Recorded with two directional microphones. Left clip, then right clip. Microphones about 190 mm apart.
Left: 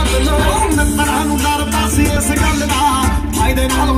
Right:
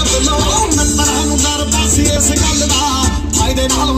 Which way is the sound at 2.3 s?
5° right (ahead or behind).